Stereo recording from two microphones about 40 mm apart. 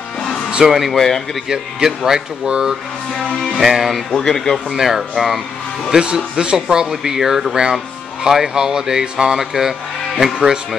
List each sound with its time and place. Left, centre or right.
0.7 s speech: centre
0.9 s speech: centre
1.5 s speech: centre
4.3 s speech: centre
4.7 s speech: centre
5.9 s speech: centre